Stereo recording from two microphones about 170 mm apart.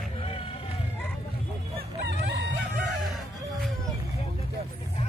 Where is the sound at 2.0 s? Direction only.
90° right.